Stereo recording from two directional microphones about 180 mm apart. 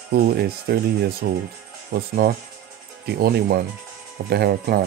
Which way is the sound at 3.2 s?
55° right (ahead or behind).